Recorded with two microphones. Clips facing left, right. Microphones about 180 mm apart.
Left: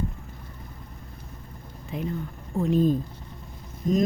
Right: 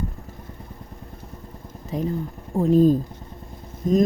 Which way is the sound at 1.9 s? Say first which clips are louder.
Right 5 dB; 40° right (ahead or behind).